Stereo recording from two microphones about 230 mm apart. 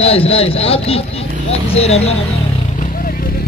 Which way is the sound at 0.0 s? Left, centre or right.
Left.